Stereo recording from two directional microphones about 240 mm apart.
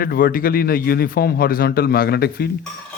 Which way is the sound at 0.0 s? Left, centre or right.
Left.